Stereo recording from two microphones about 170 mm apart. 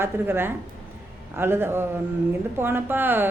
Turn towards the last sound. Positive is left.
turn(degrees=-10)  # may be behind; listen again after turning